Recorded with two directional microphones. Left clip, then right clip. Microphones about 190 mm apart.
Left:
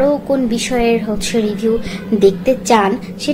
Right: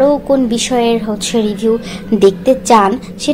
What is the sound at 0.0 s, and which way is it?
A woman's voice, 20° right (ahead or behind).